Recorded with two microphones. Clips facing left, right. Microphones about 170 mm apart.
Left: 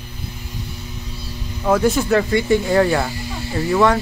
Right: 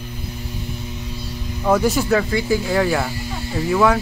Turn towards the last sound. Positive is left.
turn(degrees=-5)  # may be behind; listen again after turning